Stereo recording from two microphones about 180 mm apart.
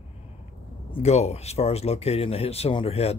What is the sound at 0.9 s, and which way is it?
Speech, 35° left (ahead or behind).